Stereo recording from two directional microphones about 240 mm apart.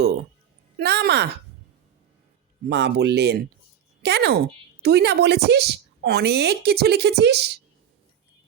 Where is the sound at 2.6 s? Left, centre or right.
Right.